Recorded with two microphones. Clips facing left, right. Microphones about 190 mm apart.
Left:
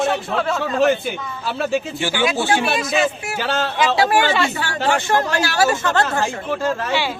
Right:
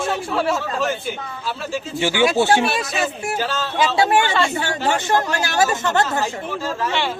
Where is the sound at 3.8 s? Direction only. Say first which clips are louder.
Right 1 dB; 25° right (ahead or behind).